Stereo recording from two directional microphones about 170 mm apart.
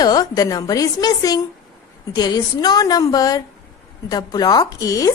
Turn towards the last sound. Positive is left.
turn(degrees=20)  # may be behind; listen again after turning